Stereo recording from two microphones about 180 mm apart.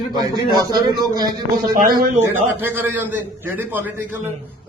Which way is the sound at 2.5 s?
10° right (ahead or behind).